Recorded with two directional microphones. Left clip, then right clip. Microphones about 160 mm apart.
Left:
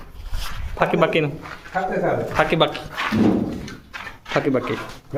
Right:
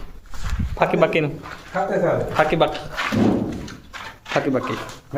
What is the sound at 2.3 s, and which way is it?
Speech, 10° left (ahead or behind).